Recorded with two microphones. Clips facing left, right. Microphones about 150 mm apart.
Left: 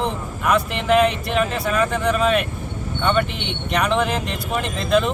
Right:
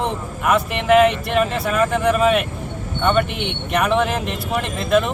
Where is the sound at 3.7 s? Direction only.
5° right (ahead or behind).